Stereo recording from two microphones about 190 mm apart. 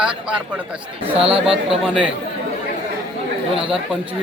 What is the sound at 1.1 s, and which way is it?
Speech, 30° right (ahead or behind).